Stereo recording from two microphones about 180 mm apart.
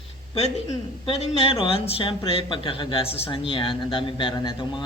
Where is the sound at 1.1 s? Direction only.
30° left (ahead or behind).